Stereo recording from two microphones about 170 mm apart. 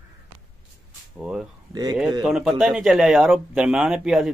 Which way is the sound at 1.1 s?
5° right (ahead or behind).